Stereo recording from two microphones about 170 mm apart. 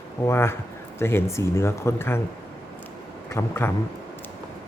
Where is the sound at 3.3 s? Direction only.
15° left (ahead or behind).